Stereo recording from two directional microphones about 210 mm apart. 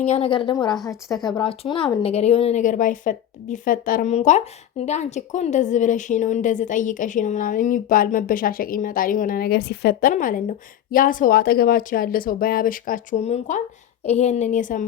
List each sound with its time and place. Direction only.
0.0 s a woman's voice: 30° left (ahead or behind)